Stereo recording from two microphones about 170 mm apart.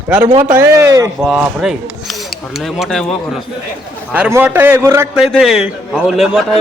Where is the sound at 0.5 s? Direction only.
15° right (ahead or behind).